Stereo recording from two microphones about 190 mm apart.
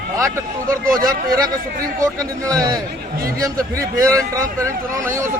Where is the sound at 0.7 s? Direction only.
45° right (ahead or behind).